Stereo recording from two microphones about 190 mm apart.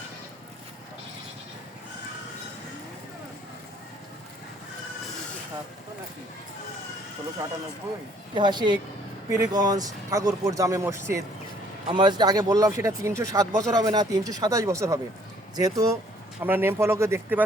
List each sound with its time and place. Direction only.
8.4 s speech: 25° right (ahead or behind)